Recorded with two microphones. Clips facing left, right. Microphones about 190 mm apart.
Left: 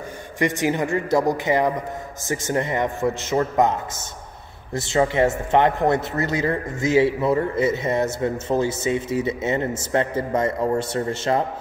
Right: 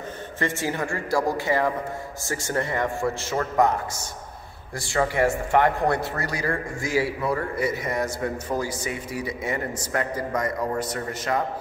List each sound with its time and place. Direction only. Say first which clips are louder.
0.4 s speech: left 6 dB; 15° left (ahead or behind)